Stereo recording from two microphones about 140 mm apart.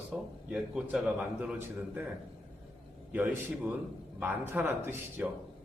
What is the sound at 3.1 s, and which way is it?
A man's voice, 15° right (ahead or behind).